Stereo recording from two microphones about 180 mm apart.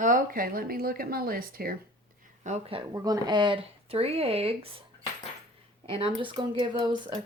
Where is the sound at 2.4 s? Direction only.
35° right (ahead or behind).